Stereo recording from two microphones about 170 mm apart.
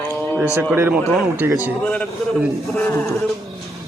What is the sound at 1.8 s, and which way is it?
Speech, 5° left (ahead or behind).